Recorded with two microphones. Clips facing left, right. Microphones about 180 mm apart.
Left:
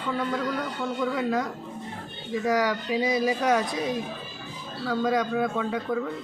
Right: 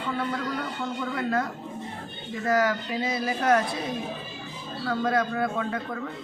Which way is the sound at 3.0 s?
15° left (ahead or behind).